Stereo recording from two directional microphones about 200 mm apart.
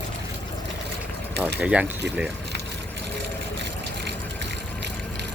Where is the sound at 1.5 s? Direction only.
5° right (ahead or behind).